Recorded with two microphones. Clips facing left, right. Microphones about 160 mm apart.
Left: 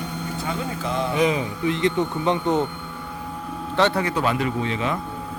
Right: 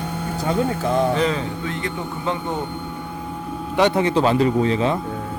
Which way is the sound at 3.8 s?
20° right (ahead or behind).